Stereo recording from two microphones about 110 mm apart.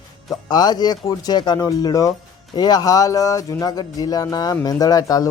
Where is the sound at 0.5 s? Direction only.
40° left (ahead or behind).